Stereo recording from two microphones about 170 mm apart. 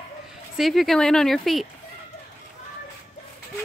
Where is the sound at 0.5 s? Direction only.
Centre (ahead or behind).